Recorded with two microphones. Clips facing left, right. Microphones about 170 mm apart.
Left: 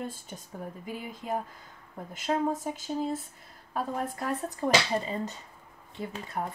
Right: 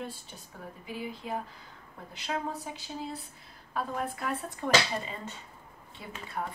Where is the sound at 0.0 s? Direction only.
45° left (ahead or behind).